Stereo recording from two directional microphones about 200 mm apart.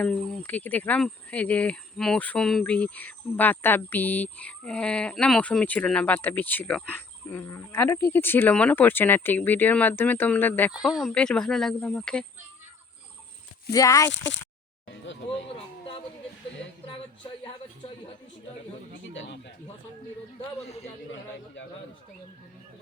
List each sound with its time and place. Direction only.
0.0 s speech: 5° left (ahead or behind)
10.7 s speech: 5° right (ahead or behind)
13.7 s speech: 15° left (ahead or behind)
19.1 s speech: 65° left (ahead or behind)